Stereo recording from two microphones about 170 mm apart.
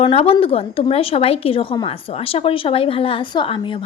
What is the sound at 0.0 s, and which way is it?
A woman's voice, 35° left (ahead or behind).